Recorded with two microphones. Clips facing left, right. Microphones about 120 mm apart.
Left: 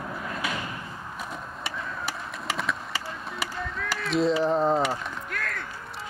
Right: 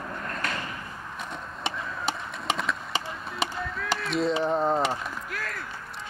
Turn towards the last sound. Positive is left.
turn(degrees=-5)  # may be behind; listen again after turning